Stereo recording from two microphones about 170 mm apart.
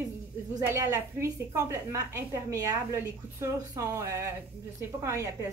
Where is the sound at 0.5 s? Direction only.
20° right (ahead or behind).